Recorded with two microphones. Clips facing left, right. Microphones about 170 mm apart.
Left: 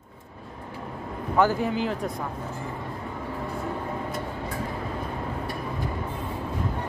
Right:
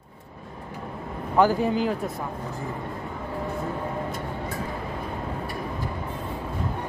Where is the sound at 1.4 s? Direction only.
15° right (ahead or behind).